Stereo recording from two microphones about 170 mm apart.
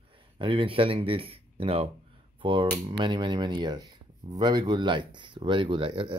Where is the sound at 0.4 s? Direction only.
30° right (ahead or behind).